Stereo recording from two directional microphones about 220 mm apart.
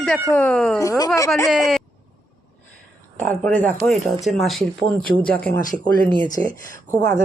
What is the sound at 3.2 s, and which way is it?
Speech, 5° left (ahead or behind).